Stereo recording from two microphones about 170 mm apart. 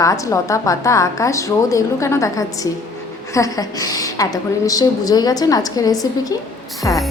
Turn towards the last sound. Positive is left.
turn(degrees=15)  # may be behind; listen again after turning